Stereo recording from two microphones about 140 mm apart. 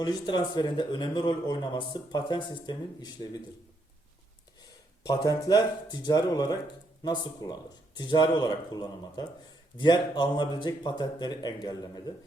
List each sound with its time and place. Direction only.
0.0 s speech: 30° left (ahead or behind)
5.0 s speech: 25° left (ahead or behind)